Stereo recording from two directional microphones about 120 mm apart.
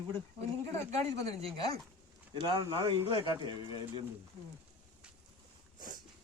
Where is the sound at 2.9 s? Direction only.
40° right (ahead or behind).